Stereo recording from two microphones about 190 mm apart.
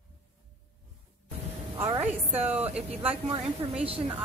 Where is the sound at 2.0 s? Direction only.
10° right (ahead or behind).